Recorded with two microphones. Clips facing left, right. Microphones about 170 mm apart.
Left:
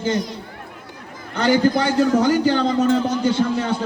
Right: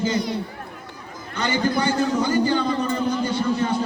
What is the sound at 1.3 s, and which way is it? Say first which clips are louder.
A man's voice: left 6 dB; 65° left (ahead or behind).